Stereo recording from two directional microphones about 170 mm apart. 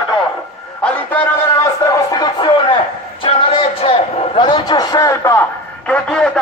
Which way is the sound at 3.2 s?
30° left (ahead or behind).